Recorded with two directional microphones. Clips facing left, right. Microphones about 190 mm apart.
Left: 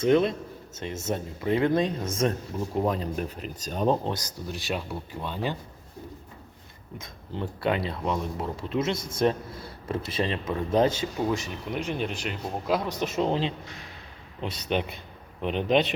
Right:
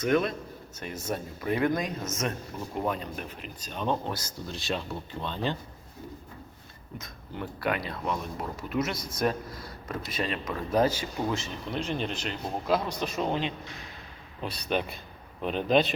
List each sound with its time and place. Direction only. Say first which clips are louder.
0.0 s speech: left 4 dB; 25° left (ahead or behind)
4.4 s speech: left 1 dB; 15° left (ahead or behind)
7.0 s speech: left 4 dB; 25° left (ahead or behind)